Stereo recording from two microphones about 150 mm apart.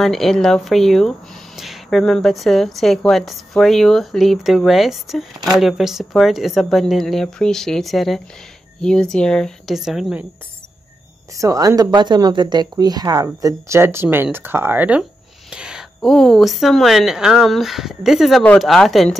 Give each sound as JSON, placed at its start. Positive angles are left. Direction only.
{"t": 0.0, "sound": "a woman's voice", "side_deg": 0}
{"t": 11.3, "sound": "a woman's voice", "side_deg": -20}